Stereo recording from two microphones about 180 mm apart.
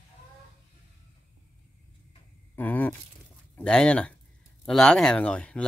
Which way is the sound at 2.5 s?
10° left (ahead or behind).